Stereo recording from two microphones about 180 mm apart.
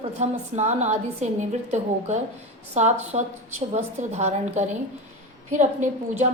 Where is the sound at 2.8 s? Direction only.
40° right (ahead or behind).